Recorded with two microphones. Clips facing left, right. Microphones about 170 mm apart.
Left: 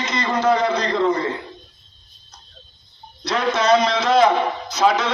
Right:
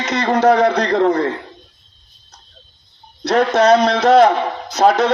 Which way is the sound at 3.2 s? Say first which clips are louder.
Right 6 dB; 60° right (ahead or behind).